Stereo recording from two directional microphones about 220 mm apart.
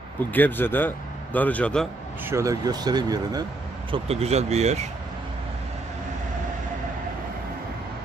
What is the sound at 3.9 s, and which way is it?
Speech, 30° right (ahead or behind).